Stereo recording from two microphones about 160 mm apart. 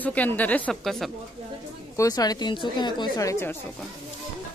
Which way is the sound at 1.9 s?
20° left (ahead or behind).